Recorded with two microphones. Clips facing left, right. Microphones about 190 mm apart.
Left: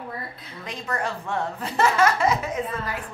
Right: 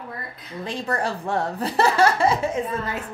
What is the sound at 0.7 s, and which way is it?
Speech, 30° right (ahead or behind).